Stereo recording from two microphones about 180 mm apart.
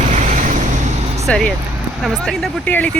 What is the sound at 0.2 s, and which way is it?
Vehicle, 45° right (ahead or behind).